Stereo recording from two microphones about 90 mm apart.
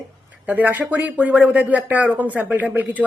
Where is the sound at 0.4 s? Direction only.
20° right (ahead or behind).